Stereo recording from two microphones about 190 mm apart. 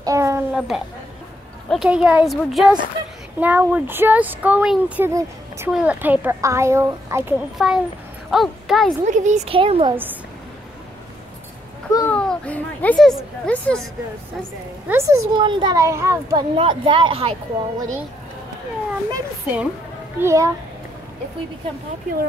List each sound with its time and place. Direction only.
0.0 s a sound: 15° right (ahead or behind)
0.5 s a woman's voice: centre (ahead or behind)
7.5 s a woman's voice: centre (ahead or behind)
9.0 s a woman's voice: 40° right (ahead or behind)
12.1 s children playing: 5° left (ahead or behind)
14.9 s speech: 15° right (ahead or behind)
16.5 s speech: 25° right (ahead or behind)
19.1 s speech: 10° right (ahead or behind)